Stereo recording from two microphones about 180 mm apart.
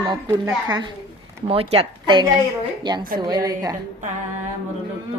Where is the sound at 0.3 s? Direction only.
20° right (ahead or behind).